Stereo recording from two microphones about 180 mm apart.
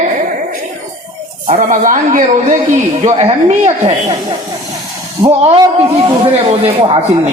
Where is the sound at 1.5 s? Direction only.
40° right (ahead or behind).